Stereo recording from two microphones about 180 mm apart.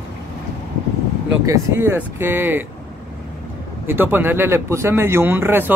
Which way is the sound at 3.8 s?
10° right (ahead or behind).